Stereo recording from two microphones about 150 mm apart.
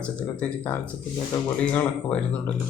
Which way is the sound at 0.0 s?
10° left (ahead or behind).